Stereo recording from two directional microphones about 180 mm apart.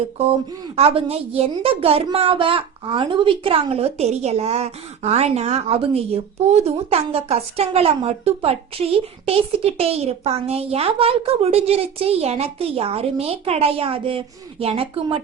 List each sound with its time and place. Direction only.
0.8 s a woman's voice: 30° right (ahead or behind)